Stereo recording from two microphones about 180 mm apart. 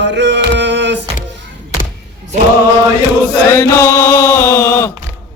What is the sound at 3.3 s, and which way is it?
Chant, 15° left (ahead or behind).